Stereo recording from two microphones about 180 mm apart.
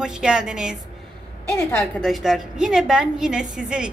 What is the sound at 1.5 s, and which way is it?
Speech, 15° left (ahead or behind).